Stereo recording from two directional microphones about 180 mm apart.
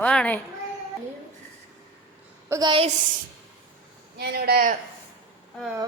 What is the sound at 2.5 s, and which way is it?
Speech, 20° right (ahead or behind).